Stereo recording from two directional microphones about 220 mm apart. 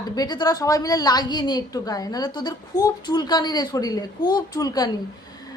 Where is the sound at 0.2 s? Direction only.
20° left (ahead or behind).